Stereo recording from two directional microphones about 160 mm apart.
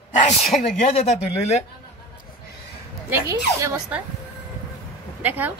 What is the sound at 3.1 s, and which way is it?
Speech, 20° right (ahead or behind).